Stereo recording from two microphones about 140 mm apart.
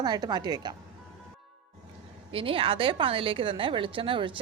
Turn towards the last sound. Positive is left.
turn(degrees=-40)  # may be behind; listen again after turning